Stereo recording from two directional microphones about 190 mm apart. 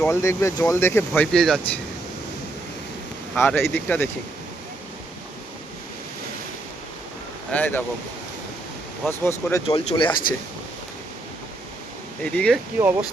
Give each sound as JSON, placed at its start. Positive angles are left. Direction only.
{"t": 0.1, "sound": "speech", "side_deg": 15}
{"t": 3.3, "sound": "speech", "side_deg": 10}
{"t": 7.5, "sound": "speech", "side_deg": 10}
{"t": 9.0, "sound": "speech", "side_deg": 15}
{"t": 9.6, "sound": "speech", "side_deg": 25}
{"t": 12.2, "sound": "speech", "side_deg": 5}
{"t": 12.8, "sound": "speech", "side_deg": -10}